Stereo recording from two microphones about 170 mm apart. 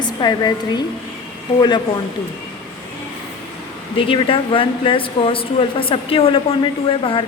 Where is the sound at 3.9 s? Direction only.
30° left (ahead or behind).